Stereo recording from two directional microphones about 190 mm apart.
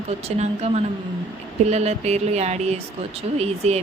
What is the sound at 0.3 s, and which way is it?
Speech, 35° right (ahead or behind).